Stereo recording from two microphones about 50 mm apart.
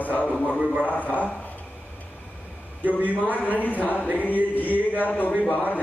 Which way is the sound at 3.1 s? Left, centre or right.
Left.